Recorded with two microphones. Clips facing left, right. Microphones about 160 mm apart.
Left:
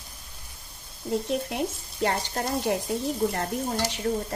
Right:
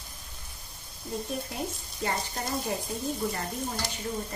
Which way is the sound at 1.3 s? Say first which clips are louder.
Left 6 dB; 75° left (ahead or behind).